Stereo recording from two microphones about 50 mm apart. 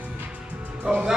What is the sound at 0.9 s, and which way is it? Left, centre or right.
Music, right.